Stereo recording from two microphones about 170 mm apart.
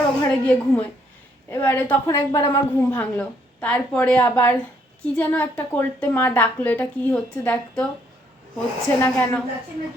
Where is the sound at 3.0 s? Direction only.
10° left (ahead or behind).